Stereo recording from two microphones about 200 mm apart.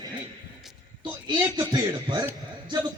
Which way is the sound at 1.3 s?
20° right (ahead or behind).